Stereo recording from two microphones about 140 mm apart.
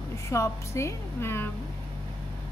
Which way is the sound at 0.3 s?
20° left (ahead or behind).